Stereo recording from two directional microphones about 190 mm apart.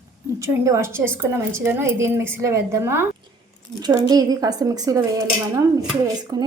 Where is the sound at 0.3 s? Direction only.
15° right (ahead or behind).